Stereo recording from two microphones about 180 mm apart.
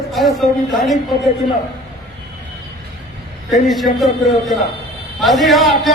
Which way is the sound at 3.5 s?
Centre (ahead or behind).